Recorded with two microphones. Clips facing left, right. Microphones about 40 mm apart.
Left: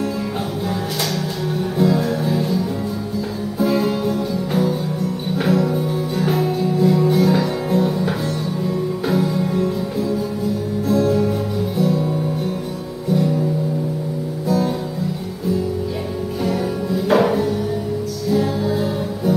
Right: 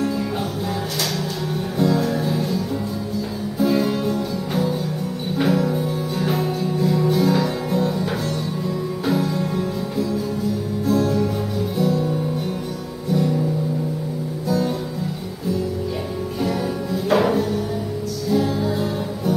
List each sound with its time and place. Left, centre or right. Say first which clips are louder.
1.8 s music: left 1 dB; centre
10.9 s music: left 2 dB; centre
11.8 s music: left 1 dB; centre
16.4 s music: left 3 dB; centre